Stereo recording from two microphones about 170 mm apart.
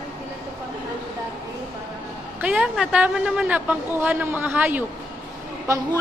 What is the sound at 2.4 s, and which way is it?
A woman's voice, 5° right (ahead or behind).